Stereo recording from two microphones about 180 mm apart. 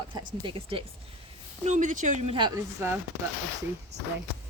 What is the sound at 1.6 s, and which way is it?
Speech, 45° right (ahead or behind).